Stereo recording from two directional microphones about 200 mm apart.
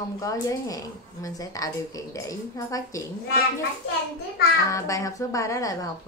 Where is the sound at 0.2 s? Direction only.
15° left (ahead or behind).